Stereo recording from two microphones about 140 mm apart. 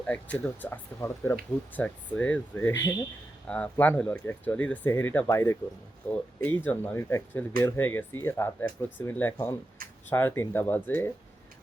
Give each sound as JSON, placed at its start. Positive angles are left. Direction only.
{"t": 0.1, "sound": "speech", "side_deg": 10}